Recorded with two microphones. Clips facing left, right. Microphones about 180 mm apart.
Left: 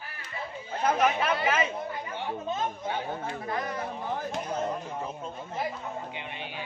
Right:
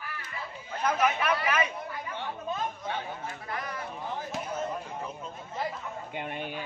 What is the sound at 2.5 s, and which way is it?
Speech, 25° left (ahead or behind).